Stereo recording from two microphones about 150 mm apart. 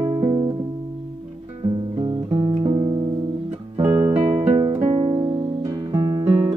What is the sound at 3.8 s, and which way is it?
Music, 30° right (ahead or behind).